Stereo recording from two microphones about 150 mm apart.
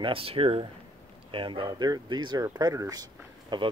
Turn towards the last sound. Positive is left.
turn(degrees=-30)  # may be behind; listen again after turning